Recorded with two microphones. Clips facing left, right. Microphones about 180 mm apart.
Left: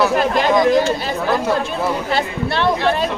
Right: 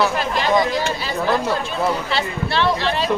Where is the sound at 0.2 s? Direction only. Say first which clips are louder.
Left 4 dB; 50° left (ahead or behind).